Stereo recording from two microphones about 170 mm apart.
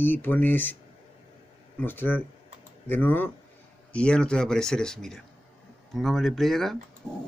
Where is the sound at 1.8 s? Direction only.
10° left (ahead or behind).